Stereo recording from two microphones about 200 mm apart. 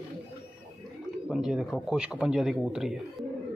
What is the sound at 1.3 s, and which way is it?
Speech, 5° right (ahead or behind).